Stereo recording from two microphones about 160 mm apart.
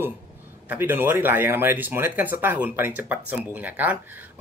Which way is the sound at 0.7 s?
15° right (ahead or behind).